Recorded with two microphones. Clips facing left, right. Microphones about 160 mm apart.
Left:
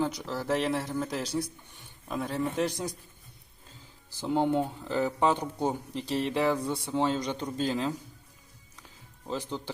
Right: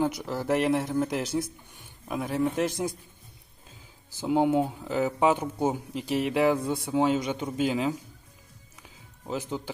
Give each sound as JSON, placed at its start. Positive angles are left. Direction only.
{"t": 0.0, "sound": "speech", "side_deg": -15}
{"t": 1.7, "sound": "a sound", "side_deg": -15}
{"t": 2.6, "sound": "a man's voice", "side_deg": -20}
{"t": 4.2, "sound": "speech", "side_deg": -10}
{"t": 9.2, "sound": "speech", "side_deg": -10}